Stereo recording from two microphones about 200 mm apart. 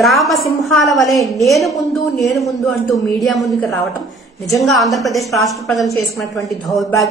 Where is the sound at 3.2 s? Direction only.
Centre (ahead or behind).